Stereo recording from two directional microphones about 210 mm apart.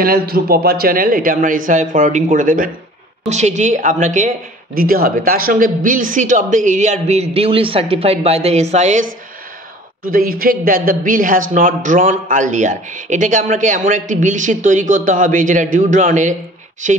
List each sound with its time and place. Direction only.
0.0 s a man's voice: 45° right (ahead or behind)
10.0 s a man's voice: 45° right (ahead or behind)